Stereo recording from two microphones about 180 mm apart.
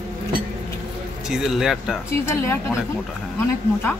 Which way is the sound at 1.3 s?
Centre (ahead or behind).